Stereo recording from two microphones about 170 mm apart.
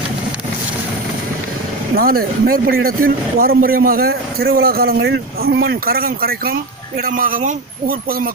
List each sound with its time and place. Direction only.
2.0 s speech: 60° right (ahead or behind)